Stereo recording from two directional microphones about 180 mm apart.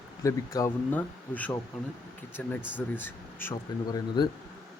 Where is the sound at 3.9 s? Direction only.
25° left (ahead or behind).